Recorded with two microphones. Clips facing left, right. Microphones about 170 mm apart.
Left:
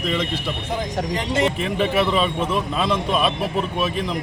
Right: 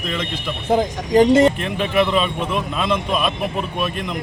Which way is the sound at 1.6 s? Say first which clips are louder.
Right 1 dB; centre (ahead or behind).